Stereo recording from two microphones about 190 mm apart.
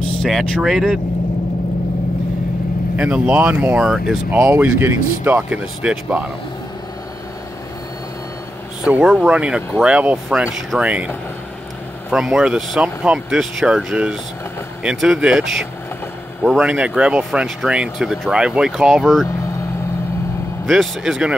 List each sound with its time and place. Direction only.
0.2 s speech: centre (ahead or behind)
3.0 s speech: 5° right (ahead or behind)
4.4 s speech: 15° right (ahead or behind)
8.8 s speech: 5° right (ahead or behind)
12.1 s speech: 5° right (ahead or behind)
20.6 s speech: centre (ahead or behind)